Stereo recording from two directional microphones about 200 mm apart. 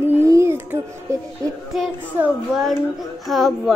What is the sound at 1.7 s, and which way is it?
Speech, centre (ahead or behind).